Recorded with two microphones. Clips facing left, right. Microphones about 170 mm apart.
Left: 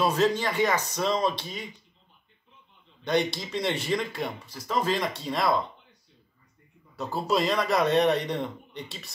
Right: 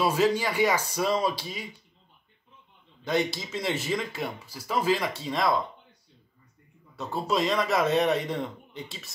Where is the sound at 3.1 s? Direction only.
5° right (ahead or behind).